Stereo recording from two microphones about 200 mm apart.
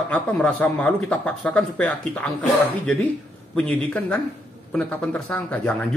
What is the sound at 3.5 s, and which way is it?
A man's voice, 5° left (ahead or behind).